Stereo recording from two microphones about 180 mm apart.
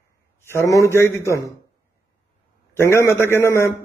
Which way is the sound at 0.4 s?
15° left (ahead or behind).